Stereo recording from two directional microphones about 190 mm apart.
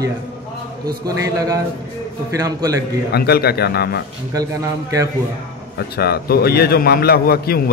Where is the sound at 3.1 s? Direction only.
55° left (ahead or behind).